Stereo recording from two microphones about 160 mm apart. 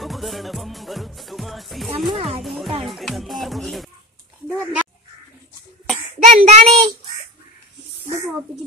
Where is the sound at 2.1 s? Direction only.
35° right (ahead or behind).